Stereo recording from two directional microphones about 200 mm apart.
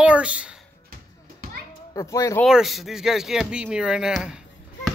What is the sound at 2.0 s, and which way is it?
Speech, 15° left (ahead or behind).